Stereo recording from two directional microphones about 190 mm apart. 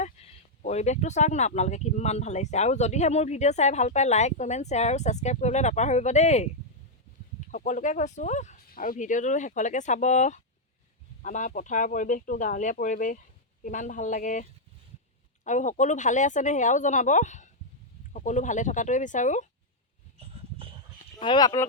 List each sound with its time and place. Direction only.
0.0 s speech: 35° left (ahead or behind)
7.5 s speech: 45° left (ahead or behind)
15.4 s speech: 40° left (ahead or behind)
20.1 s dog: 30° right (ahead or behind)
21.2 s speech: 25° left (ahead or behind)